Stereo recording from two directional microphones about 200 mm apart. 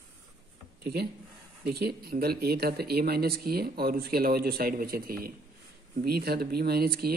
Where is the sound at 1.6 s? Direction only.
50° right (ahead or behind).